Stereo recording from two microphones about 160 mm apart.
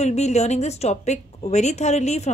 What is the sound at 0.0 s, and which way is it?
A woman's voice, 45° left (ahead or behind).